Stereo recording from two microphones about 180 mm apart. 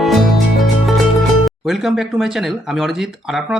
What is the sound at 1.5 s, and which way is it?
Speech, centre (ahead or behind).